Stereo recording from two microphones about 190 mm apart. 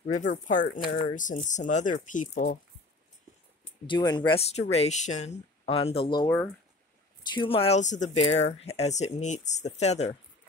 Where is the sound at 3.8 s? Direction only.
25° left (ahead or behind).